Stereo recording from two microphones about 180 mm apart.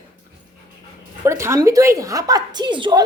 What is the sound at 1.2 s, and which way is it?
A woman's voice, 15° right (ahead or behind).